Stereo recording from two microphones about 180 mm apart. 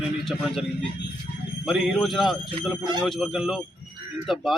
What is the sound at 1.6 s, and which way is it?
Speech, centre (ahead or behind).